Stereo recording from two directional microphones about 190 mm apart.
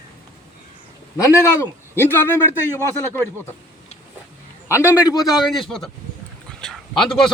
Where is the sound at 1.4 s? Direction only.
15° left (ahead or behind).